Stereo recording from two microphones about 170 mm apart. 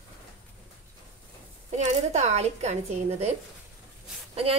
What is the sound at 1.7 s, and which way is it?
A woman's voice, 40° right (ahead or behind).